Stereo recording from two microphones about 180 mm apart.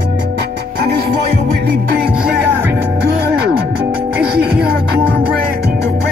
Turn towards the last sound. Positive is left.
turn(degrees=-55)  # may be behind; listen again after turning